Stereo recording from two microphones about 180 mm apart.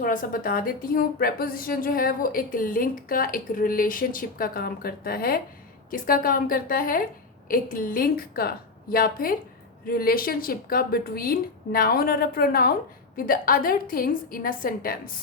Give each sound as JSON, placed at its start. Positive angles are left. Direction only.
{"t": 0.0, "sound": "a woman's voice", "side_deg": 50}